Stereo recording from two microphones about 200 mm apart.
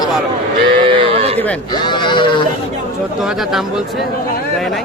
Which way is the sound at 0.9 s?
25° right (ahead or behind).